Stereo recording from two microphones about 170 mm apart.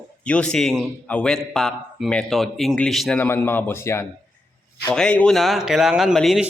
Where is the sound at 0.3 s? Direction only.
5° left (ahead or behind).